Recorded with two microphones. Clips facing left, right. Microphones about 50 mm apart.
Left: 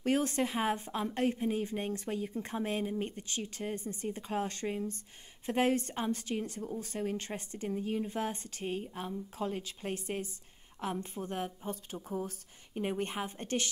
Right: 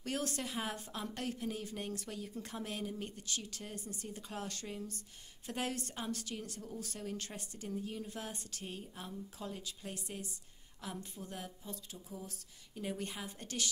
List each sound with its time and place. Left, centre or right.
0.0 s a woman's voice: left